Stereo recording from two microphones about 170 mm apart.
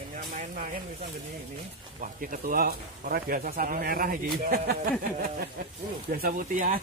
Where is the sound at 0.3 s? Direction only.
45° right (ahead or behind).